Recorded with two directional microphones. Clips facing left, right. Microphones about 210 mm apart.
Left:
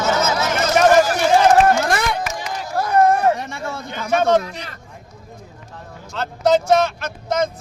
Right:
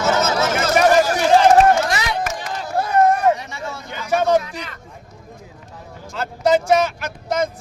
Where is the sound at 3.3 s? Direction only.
50° left (ahead or behind).